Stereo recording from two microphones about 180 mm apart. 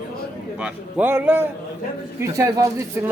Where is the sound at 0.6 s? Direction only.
10° right (ahead or behind).